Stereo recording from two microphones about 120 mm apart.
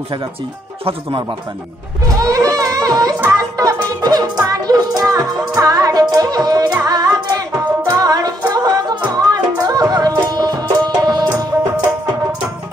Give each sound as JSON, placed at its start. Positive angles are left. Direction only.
{"t": 2.0, "sound": "music", "side_deg": -30}
{"t": 8.5, "sound": "a sound", "side_deg": -30}
{"t": 9.1, "sound": "music", "side_deg": -30}